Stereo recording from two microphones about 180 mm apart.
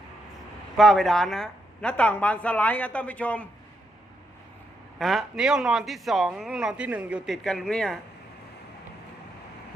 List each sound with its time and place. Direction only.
0.8 s speech: centre (ahead or behind)
4.9 s speech: centre (ahead or behind)